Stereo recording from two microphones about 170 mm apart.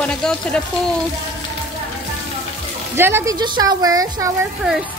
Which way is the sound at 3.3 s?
25° right (ahead or behind).